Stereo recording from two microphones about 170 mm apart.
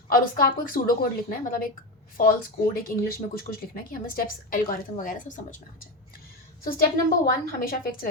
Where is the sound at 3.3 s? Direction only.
60° left (ahead or behind).